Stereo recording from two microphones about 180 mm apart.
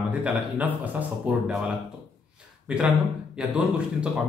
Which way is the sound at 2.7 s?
5° right (ahead or behind).